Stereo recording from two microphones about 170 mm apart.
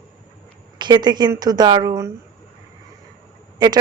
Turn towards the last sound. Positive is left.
turn(degrees=-25)  # may be behind; listen again after turning